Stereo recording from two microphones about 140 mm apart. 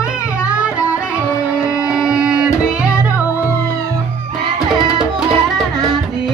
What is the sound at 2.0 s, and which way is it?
Music, 5° right (ahead or behind).